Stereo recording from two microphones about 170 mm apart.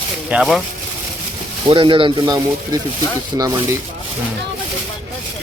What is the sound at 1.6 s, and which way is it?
Speech, 30° right (ahead or behind).